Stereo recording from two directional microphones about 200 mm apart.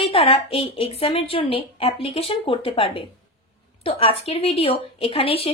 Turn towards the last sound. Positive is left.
turn(degrees=30)  # may be behind; listen again after turning